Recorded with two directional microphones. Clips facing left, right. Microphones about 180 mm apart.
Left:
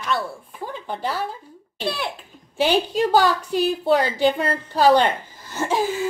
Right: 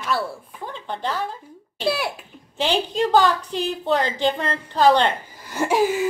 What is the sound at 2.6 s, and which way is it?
A woman's voice, 10° left (ahead or behind).